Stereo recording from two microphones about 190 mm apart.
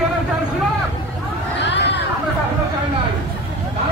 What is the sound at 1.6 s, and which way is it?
Hubbub, 65° left (ahead or behind).